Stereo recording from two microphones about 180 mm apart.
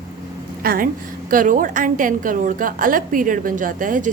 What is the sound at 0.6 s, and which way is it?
A woman's voice, 55° right (ahead or behind).